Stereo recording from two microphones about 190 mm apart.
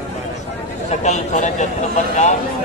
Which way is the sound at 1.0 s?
40° left (ahead or behind).